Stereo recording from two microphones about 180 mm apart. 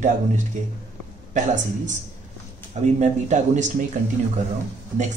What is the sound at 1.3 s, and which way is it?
Speech, 45° right (ahead or behind).